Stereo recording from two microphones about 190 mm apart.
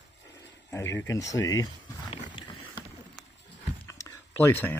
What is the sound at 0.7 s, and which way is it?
Speech, 15° left (ahead or behind).